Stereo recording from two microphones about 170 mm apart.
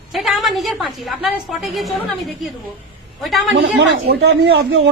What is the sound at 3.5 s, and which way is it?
Speech, 85° right.